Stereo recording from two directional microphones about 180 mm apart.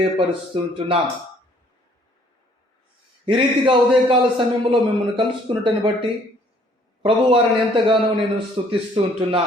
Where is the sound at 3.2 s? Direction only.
30° right (ahead or behind).